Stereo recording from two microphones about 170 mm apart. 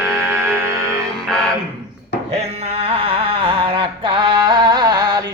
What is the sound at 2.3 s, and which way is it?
Music, 40° right (ahead or behind).